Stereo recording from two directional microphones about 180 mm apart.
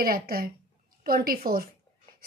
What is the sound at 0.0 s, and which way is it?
A woman's voice, 55° right (ahead or behind).